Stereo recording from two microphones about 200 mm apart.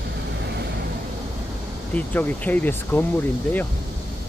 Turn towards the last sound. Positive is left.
turn(degrees=10)  # may be behind; listen again after turning